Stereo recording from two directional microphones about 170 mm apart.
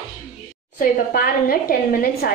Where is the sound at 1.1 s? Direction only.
55° left (ahead or behind).